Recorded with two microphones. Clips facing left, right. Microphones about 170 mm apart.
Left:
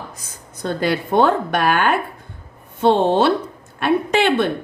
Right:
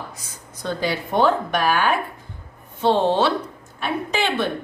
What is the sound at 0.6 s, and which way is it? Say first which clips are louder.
A woman's voice: left 4 dB; 60° left (ahead or behind).